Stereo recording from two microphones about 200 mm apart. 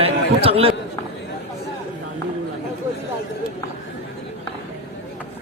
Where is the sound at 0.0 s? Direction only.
30° right (ahead or behind).